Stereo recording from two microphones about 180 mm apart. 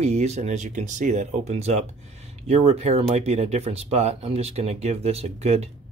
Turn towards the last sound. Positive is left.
turn(degrees=-35)  # may be behind; listen again after turning